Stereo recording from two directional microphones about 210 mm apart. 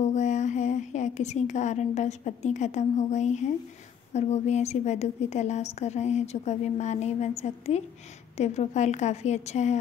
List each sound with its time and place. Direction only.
0.0 s a woman's voice: 35° left (ahead or behind)